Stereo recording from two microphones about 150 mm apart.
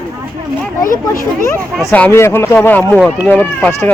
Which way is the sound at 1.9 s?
15° left (ahead or behind).